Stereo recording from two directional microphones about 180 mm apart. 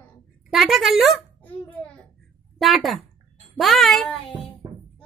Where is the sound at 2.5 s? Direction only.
Centre (ahead or behind).